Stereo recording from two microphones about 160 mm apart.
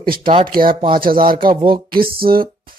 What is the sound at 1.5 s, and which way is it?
Speech, 30° right (ahead or behind).